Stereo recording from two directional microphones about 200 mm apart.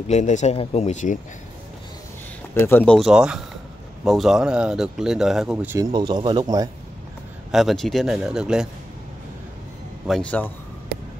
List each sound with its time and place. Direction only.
0.1 s speech: 35° left (ahead or behind)
2.5 s speech: 10° left (ahead or behind); by 5.8 s 5° right (ahead or behind)
5.8 s speech: 20° right (ahead or behind)
7.5 s speech: centre (ahead or behind)
10.0 s a man's voice: 5° left (ahead or behind)